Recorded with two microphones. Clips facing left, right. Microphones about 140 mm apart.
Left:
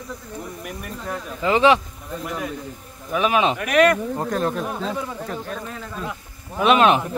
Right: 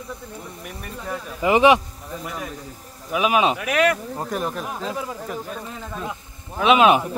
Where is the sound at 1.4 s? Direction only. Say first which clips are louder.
Right 1 dB; 15° right (ahead or behind).